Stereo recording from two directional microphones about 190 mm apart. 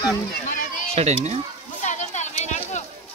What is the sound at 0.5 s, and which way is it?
Run, 45° left (ahead or behind).